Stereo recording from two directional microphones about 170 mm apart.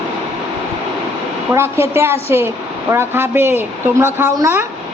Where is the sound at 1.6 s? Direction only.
15° right (ahead or behind).